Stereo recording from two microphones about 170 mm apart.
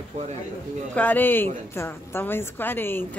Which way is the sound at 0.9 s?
10° left (ahead or behind).